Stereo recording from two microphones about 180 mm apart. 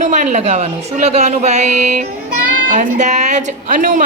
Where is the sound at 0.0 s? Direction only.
40° right (ahead or behind).